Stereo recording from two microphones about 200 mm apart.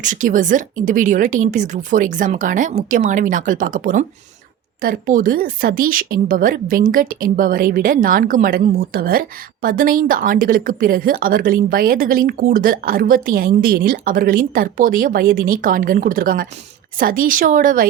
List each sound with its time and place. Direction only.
0.0 s a woman's voice: 40° right (ahead or behind)